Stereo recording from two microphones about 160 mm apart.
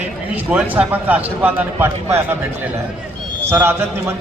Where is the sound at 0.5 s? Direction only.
10° right (ahead or behind).